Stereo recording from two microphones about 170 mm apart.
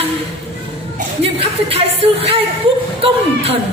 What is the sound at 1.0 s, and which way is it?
Speech, 35° right (ahead or behind).